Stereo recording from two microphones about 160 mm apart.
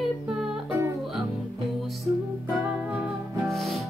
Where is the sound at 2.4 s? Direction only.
10° right (ahead or behind).